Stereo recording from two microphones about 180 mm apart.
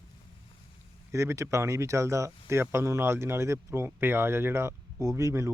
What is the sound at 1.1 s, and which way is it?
Speech, 15° right (ahead or behind).